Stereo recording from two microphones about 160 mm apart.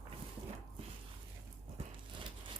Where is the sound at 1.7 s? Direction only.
35° right (ahead or behind).